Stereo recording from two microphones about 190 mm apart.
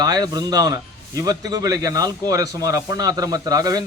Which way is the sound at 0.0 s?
20° right (ahead or behind).